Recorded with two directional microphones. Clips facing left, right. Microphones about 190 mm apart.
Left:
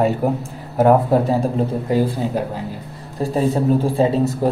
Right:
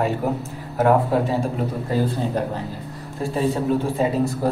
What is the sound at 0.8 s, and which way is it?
Speech, 30° left (ahead or behind).